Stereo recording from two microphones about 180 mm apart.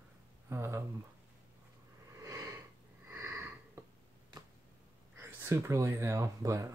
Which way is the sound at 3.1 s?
15° right (ahead or behind).